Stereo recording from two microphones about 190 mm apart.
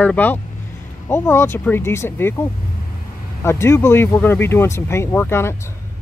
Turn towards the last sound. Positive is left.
turn(degrees=15)  # may be behind; listen again after turning